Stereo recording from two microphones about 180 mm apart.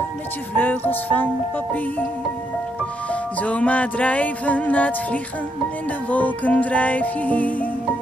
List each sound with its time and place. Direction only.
0.6 s music: 10° left (ahead or behind)
3.1 s music: 10° left (ahead or behind)